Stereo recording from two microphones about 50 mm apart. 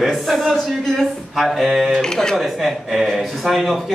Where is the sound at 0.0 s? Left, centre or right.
Centre.